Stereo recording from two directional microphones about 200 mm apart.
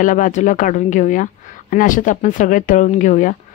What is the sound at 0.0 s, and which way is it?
Speech, 40° left (ahead or behind).